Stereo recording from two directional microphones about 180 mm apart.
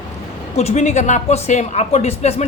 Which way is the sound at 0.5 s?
40° left (ahead or behind).